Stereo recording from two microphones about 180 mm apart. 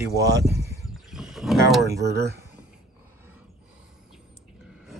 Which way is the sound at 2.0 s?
65° right (ahead or behind).